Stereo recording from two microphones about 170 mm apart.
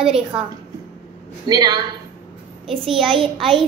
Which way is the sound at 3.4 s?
Centre (ahead or behind).